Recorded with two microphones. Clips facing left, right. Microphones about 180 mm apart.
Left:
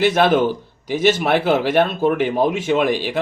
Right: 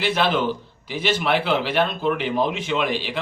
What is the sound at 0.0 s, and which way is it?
A man's voice, 50° left (ahead or behind).